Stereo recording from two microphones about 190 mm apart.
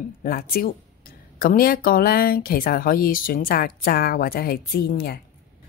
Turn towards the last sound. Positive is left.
turn(degrees=50)  # may be behind; listen again after turning